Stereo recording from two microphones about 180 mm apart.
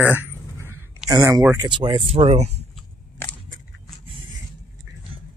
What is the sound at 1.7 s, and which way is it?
Speech, 30° right (ahead or behind).